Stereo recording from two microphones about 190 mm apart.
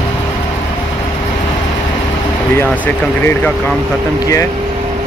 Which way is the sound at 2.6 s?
10° left (ahead or behind).